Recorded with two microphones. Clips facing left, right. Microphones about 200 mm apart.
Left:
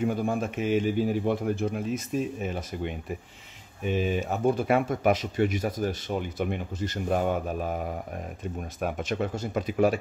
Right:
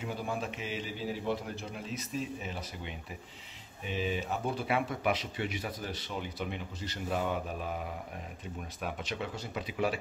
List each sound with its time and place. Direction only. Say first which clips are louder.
0.0 s speech: left 9 dB; 50° left (ahead or behind)